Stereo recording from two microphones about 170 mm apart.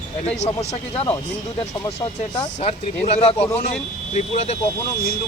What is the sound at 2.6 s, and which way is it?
Speech, 40° left (ahead or behind).